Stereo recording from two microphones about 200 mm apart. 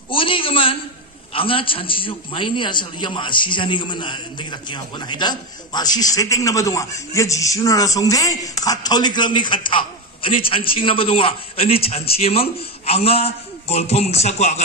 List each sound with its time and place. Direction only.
0.1 s a man's voice: 25° left (ahead or behind)